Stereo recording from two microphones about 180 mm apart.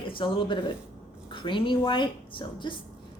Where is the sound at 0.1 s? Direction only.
30° left (ahead or behind).